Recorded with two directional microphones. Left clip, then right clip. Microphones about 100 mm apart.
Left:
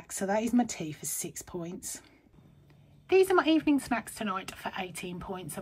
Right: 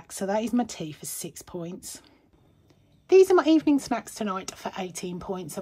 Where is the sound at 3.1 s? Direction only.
40° right (ahead or behind).